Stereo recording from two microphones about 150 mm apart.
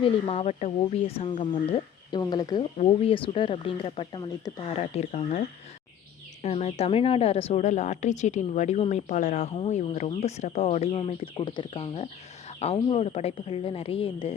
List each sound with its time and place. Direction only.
0.0 s speech: 40° left (ahead or behind)
4.8 s a woman's voice: 45° left (ahead or behind)
6.4 s a woman's voice: 45° left (ahead or behind)